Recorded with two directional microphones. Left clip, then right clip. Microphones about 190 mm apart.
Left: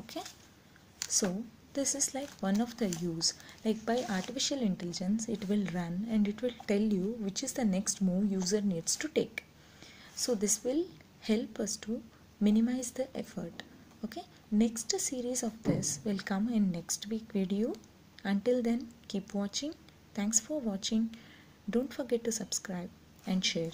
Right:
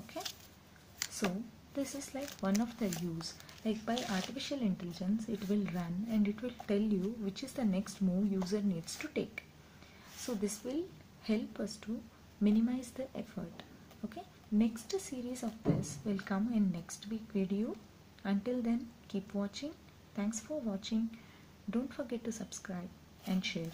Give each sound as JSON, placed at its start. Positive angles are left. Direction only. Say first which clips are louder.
{"t": 1.7, "sound": "a woman's voice", "louder": "left 7 dB", "side_deg": 15}